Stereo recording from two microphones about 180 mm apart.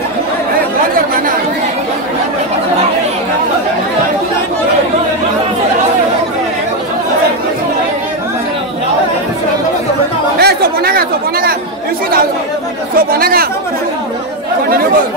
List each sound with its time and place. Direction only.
10.4 s chatter: 60° right (ahead or behind)
12.9 s chatter: 55° right (ahead or behind)